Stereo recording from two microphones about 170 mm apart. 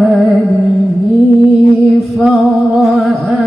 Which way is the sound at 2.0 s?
Centre (ahead or behind).